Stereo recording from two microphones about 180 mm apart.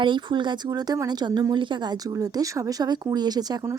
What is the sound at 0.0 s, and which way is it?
Speech, 25° right (ahead or behind).